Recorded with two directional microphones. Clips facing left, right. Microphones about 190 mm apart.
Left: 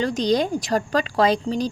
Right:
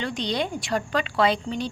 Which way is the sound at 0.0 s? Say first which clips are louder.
Left 7 dB; 40° left (ahead or behind).